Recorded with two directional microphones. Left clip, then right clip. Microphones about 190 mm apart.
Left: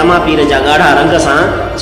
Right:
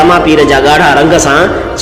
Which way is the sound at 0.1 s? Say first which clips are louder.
Right 3 dB; 25° right (ahead or behind).